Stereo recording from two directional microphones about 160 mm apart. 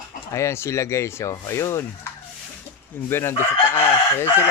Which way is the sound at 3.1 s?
15° left (ahead or behind).